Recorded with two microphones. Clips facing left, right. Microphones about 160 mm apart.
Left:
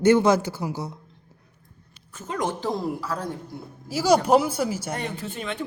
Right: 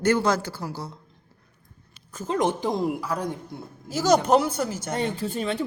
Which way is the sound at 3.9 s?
10° left (ahead or behind).